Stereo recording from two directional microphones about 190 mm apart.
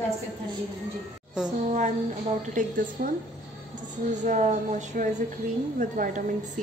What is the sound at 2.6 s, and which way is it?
Speech, 45° right (ahead or behind).